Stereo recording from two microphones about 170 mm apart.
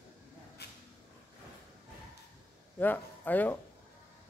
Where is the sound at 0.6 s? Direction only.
70° left (ahead or behind).